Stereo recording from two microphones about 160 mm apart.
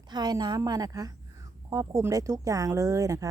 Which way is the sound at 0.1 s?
25° right (ahead or behind).